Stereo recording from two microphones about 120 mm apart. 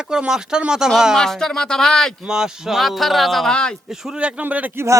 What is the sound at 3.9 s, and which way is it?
A man's voice, 5° right (ahead or behind).